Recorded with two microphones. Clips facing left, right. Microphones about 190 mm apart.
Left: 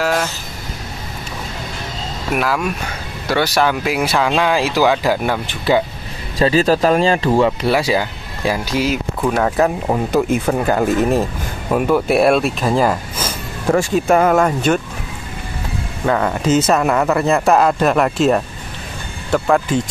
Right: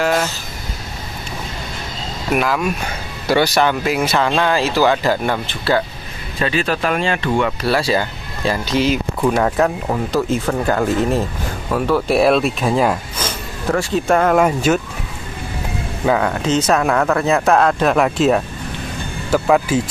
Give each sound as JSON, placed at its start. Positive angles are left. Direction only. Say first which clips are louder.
{"t": 0.0, "sound": "speech", "louder": "right 1 dB", "side_deg": 0}
{"t": 2.3, "sound": "speech", "louder": "right 1 dB", "side_deg": 0}
{"t": 6.3, "sound": "speech", "louder": "left 6 dB", "side_deg": 35}
{"t": 7.6, "sound": "speech", "louder": "left 1 dB", "side_deg": 15}
{"t": 10.1, "sound": "speech", "louder": "left 2 dB", "side_deg": 15}
{"t": 12.1, "sound": "speech", "louder": "right 1 dB", "side_deg": 0}
{"t": 16.1, "sound": "speech", "louder": "left 1 dB", "side_deg": 0}